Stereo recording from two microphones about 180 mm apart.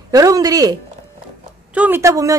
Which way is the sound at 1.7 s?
10° right (ahead or behind).